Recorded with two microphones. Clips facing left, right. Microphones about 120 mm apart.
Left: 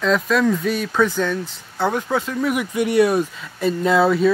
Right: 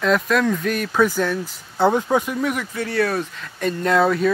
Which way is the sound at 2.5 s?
15° left (ahead or behind).